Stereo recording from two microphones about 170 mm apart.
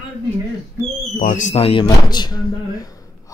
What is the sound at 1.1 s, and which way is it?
Speech, 50° left (ahead or behind).